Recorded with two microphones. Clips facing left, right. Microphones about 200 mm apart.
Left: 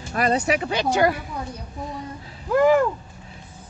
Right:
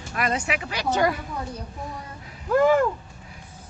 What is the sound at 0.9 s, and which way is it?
Speech, 5° left (ahead or behind).